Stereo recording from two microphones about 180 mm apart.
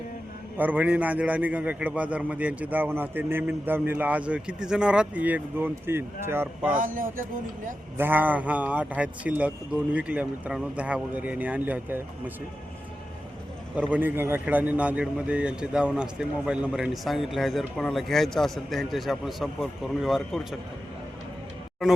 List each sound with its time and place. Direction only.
0.5 s a man's voice: 10° right (ahead or behind)
6.7 s speech: 50° right (ahead or behind)
7.9 s a man's voice: 10° right (ahead or behind)
13.9 s a man's voice: 10° right (ahead or behind)